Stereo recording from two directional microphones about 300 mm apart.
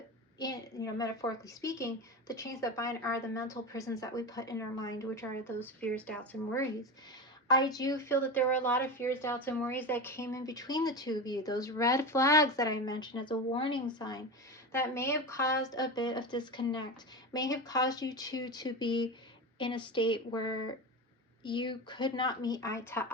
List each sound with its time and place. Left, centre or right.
0.3 s a woman's voice: centre